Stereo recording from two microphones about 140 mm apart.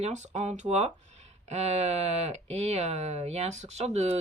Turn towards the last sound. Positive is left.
turn(degrees=-50)  # may be behind; listen again after turning